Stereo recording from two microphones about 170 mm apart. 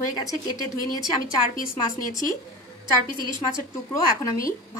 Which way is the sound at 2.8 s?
25° right (ahead or behind).